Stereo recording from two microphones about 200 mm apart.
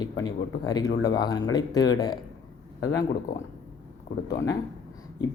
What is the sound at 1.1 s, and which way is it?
Speech, 20° left (ahead or behind).